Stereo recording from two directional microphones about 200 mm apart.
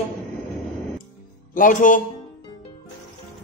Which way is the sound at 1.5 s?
40° left (ahead or behind).